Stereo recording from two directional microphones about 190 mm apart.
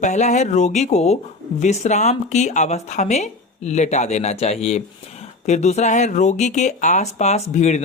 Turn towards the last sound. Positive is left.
turn(degrees=35)  # may be behind; listen again after turning